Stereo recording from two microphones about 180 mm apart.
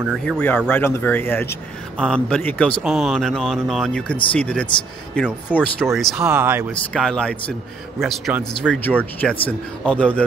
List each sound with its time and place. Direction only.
0.2 s speech: 5° left (ahead or behind)
5.9 s speech: 5° right (ahead or behind)
6.9 s speech: 5° left (ahead or behind)
8.0 s speech: 10° right (ahead or behind)
8.6 s speech: 10° left (ahead or behind)